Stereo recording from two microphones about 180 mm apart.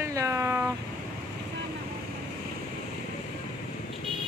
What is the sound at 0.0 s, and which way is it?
Vehicle, 15° right (ahead or behind).